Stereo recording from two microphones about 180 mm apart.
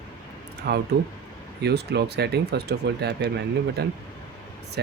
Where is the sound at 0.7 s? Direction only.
60° right (ahead or behind).